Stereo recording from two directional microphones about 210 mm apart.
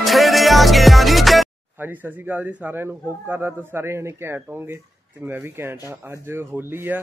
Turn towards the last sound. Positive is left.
turn(degrees=-10)  # may be behind; listen again after turning